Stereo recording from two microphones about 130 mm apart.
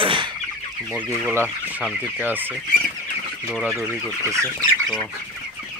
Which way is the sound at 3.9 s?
20° right (ahead or behind).